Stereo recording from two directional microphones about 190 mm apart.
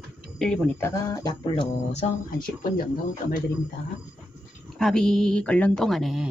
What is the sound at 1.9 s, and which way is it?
Speech, 45° left (ahead or behind).